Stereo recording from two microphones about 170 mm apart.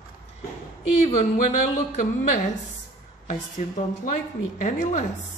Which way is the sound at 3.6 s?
45° left (ahead or behind).